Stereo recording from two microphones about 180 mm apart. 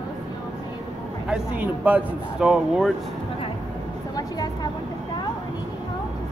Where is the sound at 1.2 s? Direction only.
5° right (ahead or behind).